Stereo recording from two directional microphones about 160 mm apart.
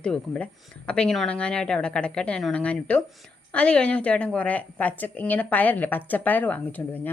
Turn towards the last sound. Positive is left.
turn(degrees=10)  # may be behind; listen again after turning